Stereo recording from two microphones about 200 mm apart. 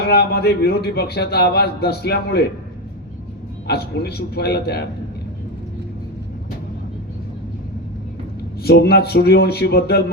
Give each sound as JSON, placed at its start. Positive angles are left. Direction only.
{"t": 0.1, "sound": "a man's voice", "side_deg": 50}
{"t": 3.7, "sound": "a man's voice", "side_deg": 50}
{"t": 8.6, "sound": "a man's voice", "side_deg": 55}